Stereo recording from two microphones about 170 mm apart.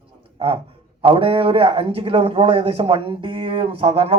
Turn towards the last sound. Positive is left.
turn(degrees=-35)  # may be behind; listen again after turning